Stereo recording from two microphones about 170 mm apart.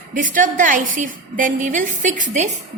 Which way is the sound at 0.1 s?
50° right (ahead or behind).